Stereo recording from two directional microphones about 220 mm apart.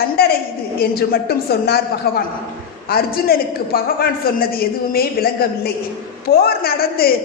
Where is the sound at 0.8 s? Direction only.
45° left (ahead or behind).